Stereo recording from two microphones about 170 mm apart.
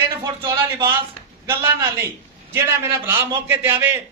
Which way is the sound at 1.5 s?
15° right (ahead or behind).